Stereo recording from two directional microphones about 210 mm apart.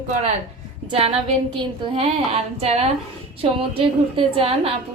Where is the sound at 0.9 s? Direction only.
30° right (ahead or behind).